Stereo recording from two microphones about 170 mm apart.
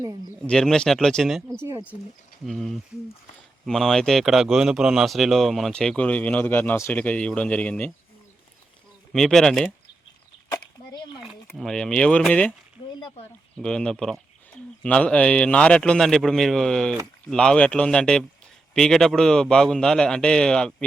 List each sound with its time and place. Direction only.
0.4 s speech: 5° left (ahead or behind)
1.6 s speech: 10° right (ahead or behind)
2.5 s speech: centre (ahead or behind)
9.1 s speech: 5° left (ahead or behind)
11.5 s speech: 5° left (ahead or behind)
12.9 s speech: 25° left (ahead or behind)
13.6 s speech: 5° left (ahead or behind)